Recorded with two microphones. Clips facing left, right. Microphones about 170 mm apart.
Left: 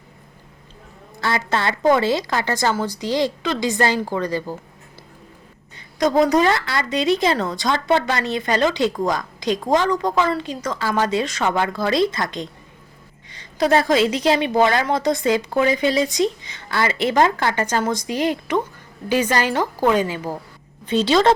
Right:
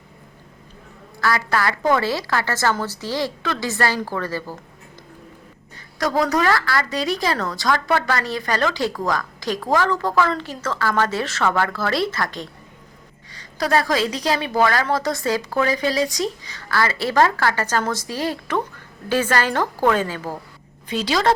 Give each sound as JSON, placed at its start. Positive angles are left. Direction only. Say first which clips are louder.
{"t": 1.2, "sound": "a woman's voice", "louder": "right 1 dB", "side_deg": 25}
{"t": 5.7, "sound": "a woman's voice", "louder": "left 4 dB", "side_deg": 20}
{"t": 20.8, "sound": "a woman's voice", "louder": "left 4 dB", "side_deg": 25}